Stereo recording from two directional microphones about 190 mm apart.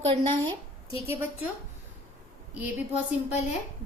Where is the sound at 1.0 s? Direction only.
10° right (ahead or behind).